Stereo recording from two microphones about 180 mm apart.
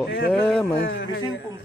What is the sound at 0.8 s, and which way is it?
Speech, 80° left.